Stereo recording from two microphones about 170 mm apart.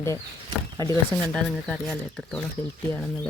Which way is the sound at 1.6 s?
5° left (ahead or behind).